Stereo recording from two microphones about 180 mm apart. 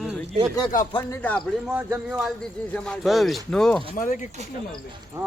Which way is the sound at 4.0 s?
45° left (ahead or behind).